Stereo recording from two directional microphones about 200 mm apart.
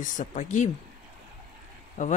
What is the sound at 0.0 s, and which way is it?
Speech, 40° left (ahead or behind).